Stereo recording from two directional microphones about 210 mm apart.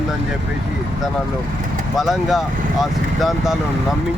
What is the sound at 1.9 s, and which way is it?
Speech, centre (ahead or behind).